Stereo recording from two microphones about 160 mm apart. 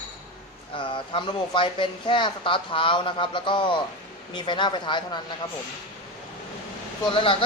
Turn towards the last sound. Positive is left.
turn(degrees=35)  # may be behind; listen again after turning